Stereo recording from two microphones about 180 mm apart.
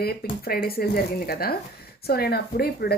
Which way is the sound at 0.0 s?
60° left (ahead or behind).